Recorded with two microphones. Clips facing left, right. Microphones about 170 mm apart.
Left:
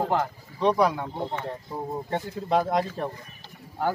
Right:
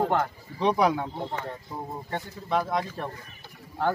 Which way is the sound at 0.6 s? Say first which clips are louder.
Left 1 dB; 10° right (ahead or behind).